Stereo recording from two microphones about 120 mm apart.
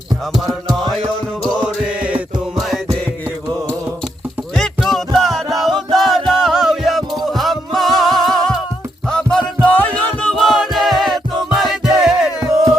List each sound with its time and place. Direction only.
0.8 s music: centre (ahead or behind)
1.6 s music: 10° right (ahead or behind)
2.6 s music: centre (ahead or behind)
4.5 s music: 5° left (ahead or behind)
12.4 s music: 30° right (ahead or behind)